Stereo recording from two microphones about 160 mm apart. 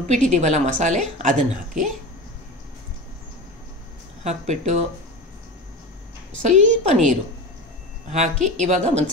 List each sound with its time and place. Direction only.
0.1 s a woman's voice: 45° right (ahead or behind)
4.2 s a woman's voice: 45° right (ahead or behind)
6.5 s a woman's voice: 45° right (ahead or behind)